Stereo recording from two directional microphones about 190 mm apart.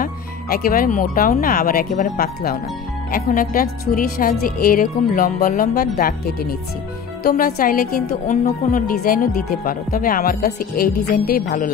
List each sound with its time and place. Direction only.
0.0 s a woman's voice: 50° left (ahead or behind)